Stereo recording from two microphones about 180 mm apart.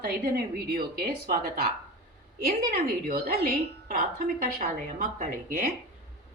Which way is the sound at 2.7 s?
55° right (ahead or behind).